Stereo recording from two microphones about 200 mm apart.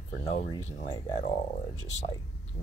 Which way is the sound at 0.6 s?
20° left (ahead or behind).